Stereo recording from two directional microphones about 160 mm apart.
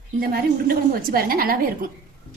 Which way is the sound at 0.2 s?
70° right (ahead or behind).